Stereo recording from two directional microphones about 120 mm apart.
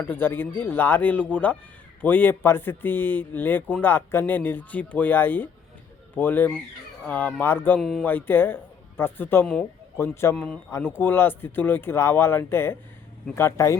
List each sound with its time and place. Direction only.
0.0 s speech: 15° left (ahead or behind)
7.8 s speech: centre (ahead or behind)
8.0 s speech: 15° left (ahead or behind)
10.7 s speech: 20° left (ahead or behind)